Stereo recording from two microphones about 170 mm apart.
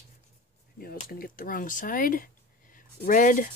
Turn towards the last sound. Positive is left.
turn(degrees=50)  # may be behind; listen again after turning